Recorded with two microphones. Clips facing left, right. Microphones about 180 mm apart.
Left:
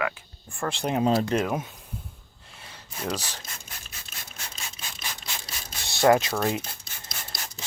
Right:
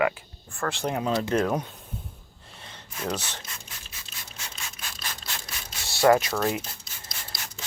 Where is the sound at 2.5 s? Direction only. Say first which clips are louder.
Right 1 dB; 5° left (ahead or behind).